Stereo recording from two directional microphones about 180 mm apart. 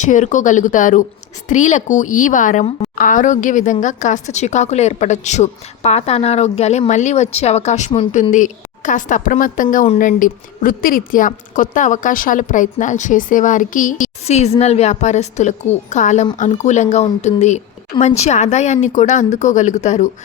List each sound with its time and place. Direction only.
0.0 s a woman's voice: 45° left (ahead or behind)